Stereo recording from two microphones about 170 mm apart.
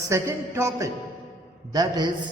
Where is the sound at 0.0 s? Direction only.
15° right (ahead or behind).